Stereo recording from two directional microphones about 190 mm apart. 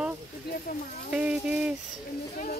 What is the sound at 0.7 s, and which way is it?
Speech, 50° left (ahead or behind).